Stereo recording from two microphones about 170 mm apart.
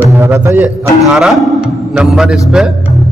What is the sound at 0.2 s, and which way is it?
A man's voice, 15° right (ahead or behind).